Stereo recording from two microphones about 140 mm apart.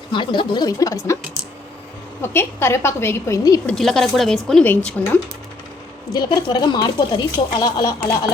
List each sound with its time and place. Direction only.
0.1 s a woman's voice: 35° left (ahead or behind)
2.2 s a woman's voice: 15° left (ahead or behind)
3.7 s speech: centre (ahead or behind)
6.1 s speech: 30° left (ahead or behind)